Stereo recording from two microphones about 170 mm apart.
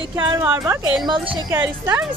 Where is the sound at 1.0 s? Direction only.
25° right (ahead or behind).